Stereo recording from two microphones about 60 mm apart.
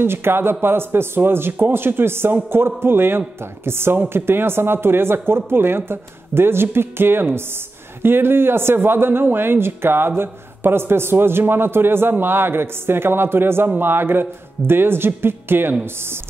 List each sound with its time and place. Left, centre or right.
0.0 s speech: right